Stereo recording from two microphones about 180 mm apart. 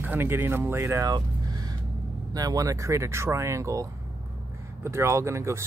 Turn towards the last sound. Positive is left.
turn(degrees=-15)  # may be behind; listen again after turning